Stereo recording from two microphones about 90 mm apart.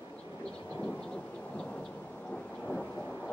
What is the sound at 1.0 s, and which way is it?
Thunder, 10° left (ahead or behind).